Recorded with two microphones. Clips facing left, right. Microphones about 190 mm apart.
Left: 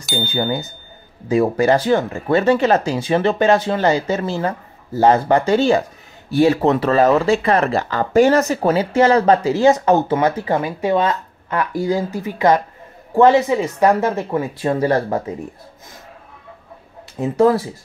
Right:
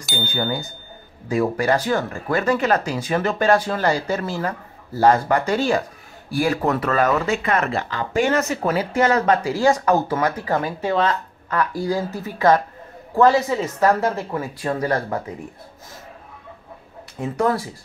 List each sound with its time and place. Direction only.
0.2 s ding: 30° left (ahead or behind)
1.3 s speech: 25° left (ahead or behind)
17.2 s speech: 25° left (ahead or behind)